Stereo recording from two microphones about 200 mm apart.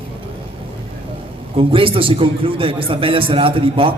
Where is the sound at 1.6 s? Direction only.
25° right (ahead or behind).